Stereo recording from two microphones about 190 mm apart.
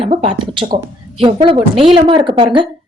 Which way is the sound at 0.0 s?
30° right (ahead or behind).